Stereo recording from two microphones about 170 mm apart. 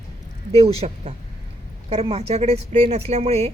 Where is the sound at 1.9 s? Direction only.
35° right (ahead or behind).